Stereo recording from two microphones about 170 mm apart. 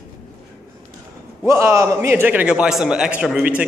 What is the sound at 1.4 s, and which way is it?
A man's voice, 15° right (ahead or behind).